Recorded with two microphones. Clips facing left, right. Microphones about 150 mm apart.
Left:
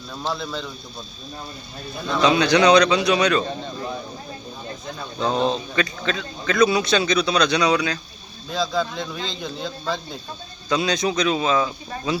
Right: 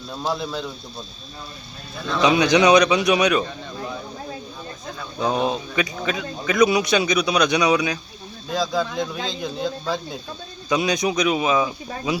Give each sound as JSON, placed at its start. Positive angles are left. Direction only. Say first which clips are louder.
{"t": 0.1, "sound": "speech", "louder": "right 2 dB", "side_deg": -10}
{"t": 2.2, "sound": "speech", "louder": "even", "side_deg": -15}
{"t": 5.2, "sound": "speech", "louder": "even", "side_deg": -10}